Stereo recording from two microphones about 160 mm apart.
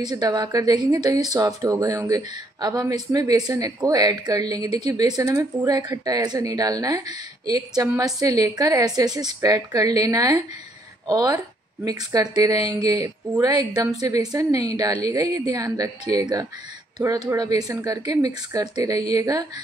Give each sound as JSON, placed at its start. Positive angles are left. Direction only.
{"t": 0.0, "sound": "speech", "side_deg": -25}